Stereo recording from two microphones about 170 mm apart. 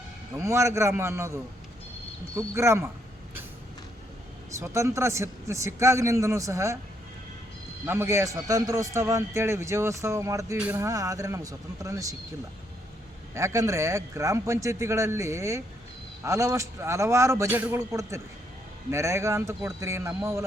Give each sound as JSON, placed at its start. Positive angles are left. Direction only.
{"t": 0.3, "sound": "a man's voice", "side_deg": -15}
{"t": 4.6, "sound": "a man's voice", "side_deg": -15}
{"t": 7.9, "sound": "a man's voice", "side_deg": -15}
{"t": 13.3, "sound": "a man's voice", "side_deg": -15}